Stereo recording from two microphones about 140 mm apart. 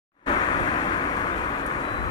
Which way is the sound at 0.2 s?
30° left (ahead or behind).